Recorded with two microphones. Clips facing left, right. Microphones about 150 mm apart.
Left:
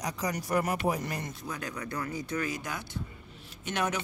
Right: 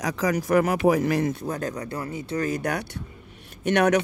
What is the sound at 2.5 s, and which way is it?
Speech, 65° right (ahead or behind).